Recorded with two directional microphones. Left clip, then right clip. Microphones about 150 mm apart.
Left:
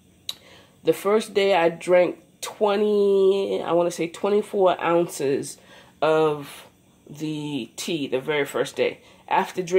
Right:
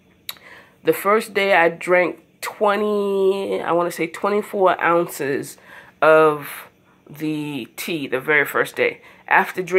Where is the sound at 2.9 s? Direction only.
30° right (ahead or behind).